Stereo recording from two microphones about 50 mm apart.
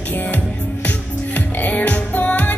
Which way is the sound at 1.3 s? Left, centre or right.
Left.